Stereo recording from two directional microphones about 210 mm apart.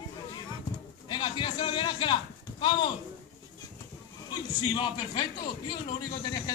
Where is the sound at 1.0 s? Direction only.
25° left (ahead or behind).